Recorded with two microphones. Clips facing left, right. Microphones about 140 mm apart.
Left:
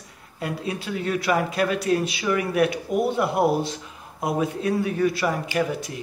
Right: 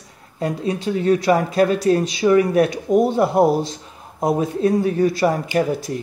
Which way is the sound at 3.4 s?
Centre (ahead or behind).